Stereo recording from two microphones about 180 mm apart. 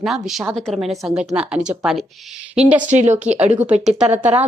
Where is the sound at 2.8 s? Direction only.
40° right (ahead or behind).